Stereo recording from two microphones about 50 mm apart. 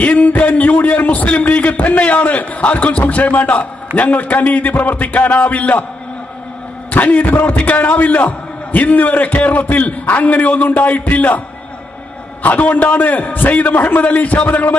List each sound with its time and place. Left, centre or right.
0.0 s a man's voice: left
6.9 s a man's voice: left
12.4 s a man's voice: left